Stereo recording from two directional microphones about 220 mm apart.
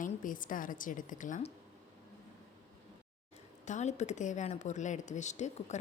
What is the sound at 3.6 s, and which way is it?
Speech, 30° left (ahead or behind).